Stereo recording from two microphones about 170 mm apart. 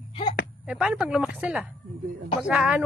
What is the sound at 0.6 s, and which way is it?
A woman's voice, 5° right (ahead or behind).